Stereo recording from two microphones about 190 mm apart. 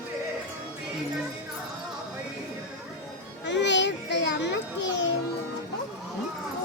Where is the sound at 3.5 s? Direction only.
70° left (ahead or behind).